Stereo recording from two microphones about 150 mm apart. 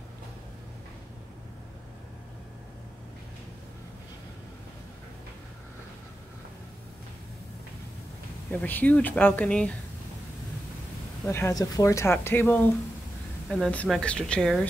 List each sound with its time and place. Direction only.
8.5 s speech: 10° left (ahead or behind)
11.2 s a woman's voice: 20° left (ahead or behind)